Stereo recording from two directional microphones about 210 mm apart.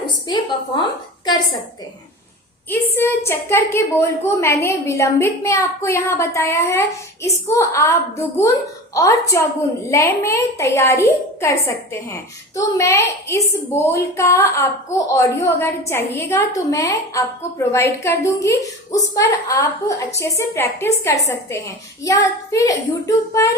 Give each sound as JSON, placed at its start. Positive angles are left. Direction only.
{"t": 0.0, "sound": "a sound", "side_deg": 20}
{"t": 2.6, "sound": "a woman's voice", "side_deg": 10}
{"t": 9.0, "sound": "a woman's voice", "side_deg": 15}